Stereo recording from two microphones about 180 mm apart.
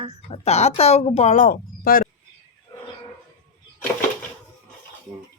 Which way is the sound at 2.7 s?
25° left (ahead or behind).